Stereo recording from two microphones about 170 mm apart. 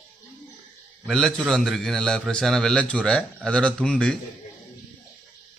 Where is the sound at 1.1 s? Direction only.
Centre (ahead or behind).